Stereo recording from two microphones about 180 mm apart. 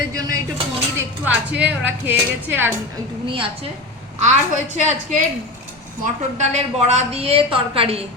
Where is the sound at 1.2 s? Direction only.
10° right (ahead or behind).